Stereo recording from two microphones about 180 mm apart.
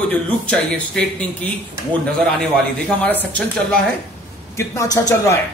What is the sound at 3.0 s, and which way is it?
Speech, 10° left (ahead or behind).